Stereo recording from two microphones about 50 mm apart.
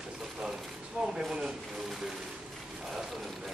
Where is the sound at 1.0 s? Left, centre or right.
Centre.